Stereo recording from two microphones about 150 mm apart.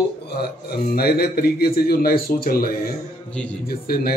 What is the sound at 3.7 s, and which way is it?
Speech, 85° left.